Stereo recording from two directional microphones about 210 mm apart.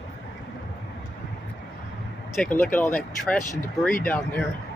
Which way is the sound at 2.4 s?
5° left (ahead or behind).